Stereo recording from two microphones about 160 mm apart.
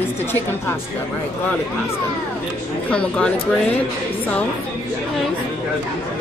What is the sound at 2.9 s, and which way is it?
Speech, 5° left (ahead or behind).